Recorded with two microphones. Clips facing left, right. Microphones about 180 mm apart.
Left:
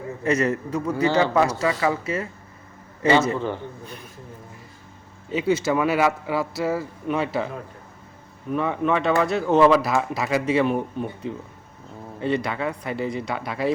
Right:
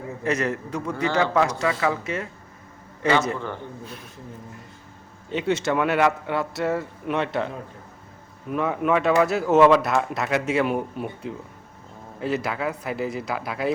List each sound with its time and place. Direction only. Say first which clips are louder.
0.3 s speech: left 3 dB; centre (ahead or behind)
3.3 s a man's voice: left 5 dB; 15° left (ahead or behind)
3.8 s speech: even; centre (ahead or behind)
5.3 s speech: left 2 dB; centre (ahead or behind)
8.5 s speech: even; centre (ahead or behind)